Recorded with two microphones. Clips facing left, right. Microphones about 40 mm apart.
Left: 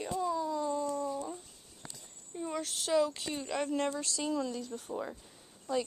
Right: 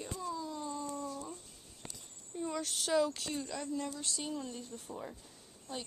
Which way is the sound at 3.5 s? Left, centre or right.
Left.